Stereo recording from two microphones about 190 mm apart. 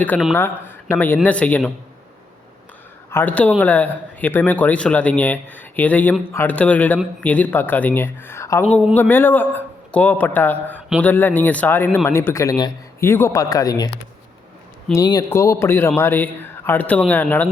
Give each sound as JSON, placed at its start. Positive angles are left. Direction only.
{"t": 0.3, "sound": "speech", "side_deg": 10}
{"t": 3.1, "sound": "speech", "side_deg": 10}
{"t": 14.9, "sound": "speech", "side_deg": 20}